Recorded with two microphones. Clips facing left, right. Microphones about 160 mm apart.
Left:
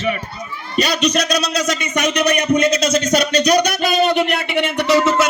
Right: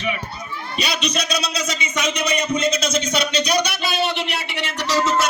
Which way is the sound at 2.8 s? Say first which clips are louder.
Left 6 dB; 40° left (ahead or behind).